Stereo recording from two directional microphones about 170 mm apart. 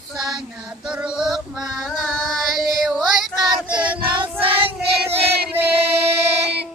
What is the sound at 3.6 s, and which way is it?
Child singing, 5° right (ahead or behind).